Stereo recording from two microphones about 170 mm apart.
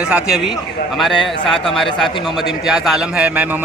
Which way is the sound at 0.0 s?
5° right (ahead or behind).